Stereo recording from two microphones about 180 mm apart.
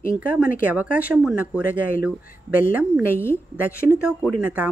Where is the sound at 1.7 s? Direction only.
50° left (ahead or behind).